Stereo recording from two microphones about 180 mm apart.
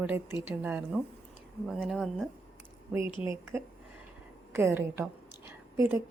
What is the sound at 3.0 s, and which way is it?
Speech, 30° left (ahead or behind).